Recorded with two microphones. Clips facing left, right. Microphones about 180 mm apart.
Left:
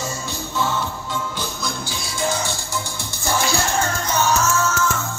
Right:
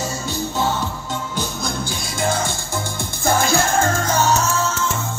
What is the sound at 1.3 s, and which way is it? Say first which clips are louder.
Music: right 3 dB; 50° right (ahead or behind).